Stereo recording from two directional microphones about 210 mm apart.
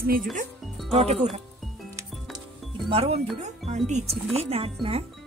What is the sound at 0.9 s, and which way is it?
Speech, 30° right (ahead or behind).